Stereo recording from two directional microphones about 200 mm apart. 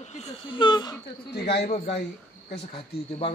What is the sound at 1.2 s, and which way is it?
Speech, 55° left (ahead or behind).